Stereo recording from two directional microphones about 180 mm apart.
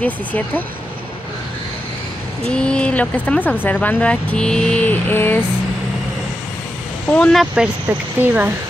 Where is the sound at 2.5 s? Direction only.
5° left (ahead or behind).